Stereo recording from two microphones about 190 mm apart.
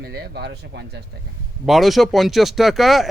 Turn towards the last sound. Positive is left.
turn(degrees=0)  # may be behind; listen again after turning